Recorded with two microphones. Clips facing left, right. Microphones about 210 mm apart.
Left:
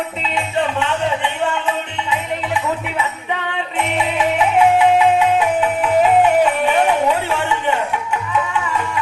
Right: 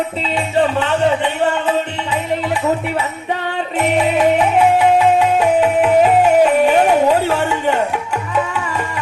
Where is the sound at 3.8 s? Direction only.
45° right (ahead or behind).